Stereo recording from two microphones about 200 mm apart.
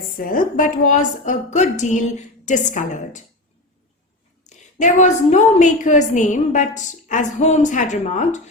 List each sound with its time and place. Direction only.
0.2 s a woman's voice: 45° left (ahead or behind)
4.4 s a woman's voice: 35° left (ahead or behind)